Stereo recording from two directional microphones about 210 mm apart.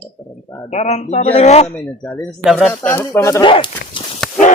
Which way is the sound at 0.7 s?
30° left (ahead or behind).